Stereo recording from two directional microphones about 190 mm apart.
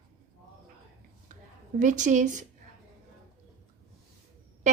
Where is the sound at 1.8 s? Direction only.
40° right (ahead or behind).